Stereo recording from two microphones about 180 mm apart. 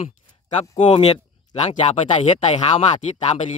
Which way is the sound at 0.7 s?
30° left (ahead or behind).